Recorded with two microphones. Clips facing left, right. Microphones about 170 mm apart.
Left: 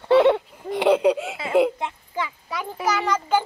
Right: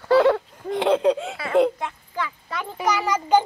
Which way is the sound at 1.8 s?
20° left (ahead or behind).